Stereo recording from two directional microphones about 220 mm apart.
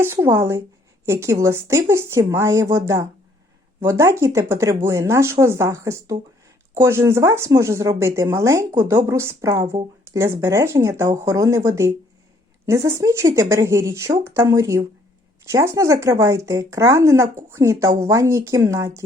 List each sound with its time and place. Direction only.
0.0 s speech: 10° right (ahead or behind)